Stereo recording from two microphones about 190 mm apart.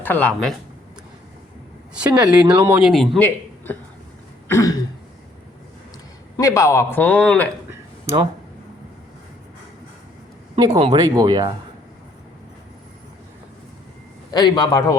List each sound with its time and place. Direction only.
0.0 s a man's voice: 10° left (ahead or behind)
2.0 s a man's voice: 5° right (ahead or behind); by 3.8 s 10° left (ahead or behind)
4.4 s throat clearing: 15° left (ahead or behind)
6.3 s a man's voice: 15° left (ahead or behind)
7.7 s a sound: 15° right (ahead or behind)
10.8 s speech: 25° right (ahead or behind)
14.3 s a man's voice: 20° left (ahead or behind)